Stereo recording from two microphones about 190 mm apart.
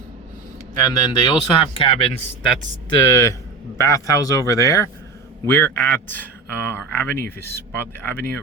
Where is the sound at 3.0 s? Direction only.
15° left (ahead or behind).